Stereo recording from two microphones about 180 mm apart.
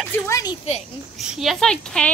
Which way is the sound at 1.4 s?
Centre (ahead or behind).